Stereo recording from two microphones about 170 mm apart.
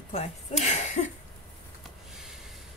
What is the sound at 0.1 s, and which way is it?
Speech, 40° left (ahead or behind).